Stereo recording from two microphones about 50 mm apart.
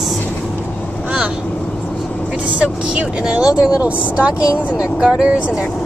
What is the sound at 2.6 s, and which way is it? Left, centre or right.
Speech, centre.